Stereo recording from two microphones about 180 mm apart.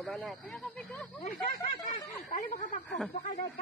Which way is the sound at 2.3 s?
45° left (ahead or behind).